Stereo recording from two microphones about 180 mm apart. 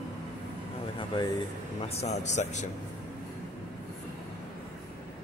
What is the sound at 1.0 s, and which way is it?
Speech, 25° left (ahead or behind).